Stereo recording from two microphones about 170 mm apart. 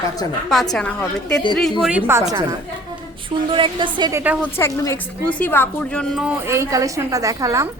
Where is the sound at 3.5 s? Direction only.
30° right (ahead or behind).